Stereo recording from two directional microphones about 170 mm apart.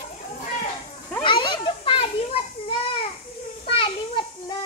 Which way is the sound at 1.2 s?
30° left (ahead or behind).